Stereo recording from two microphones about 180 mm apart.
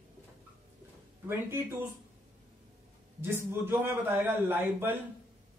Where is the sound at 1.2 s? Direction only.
15° right (ahead or behind).